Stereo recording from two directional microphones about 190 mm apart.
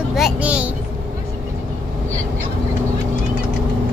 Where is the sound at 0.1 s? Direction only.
5° right (ahead or behind).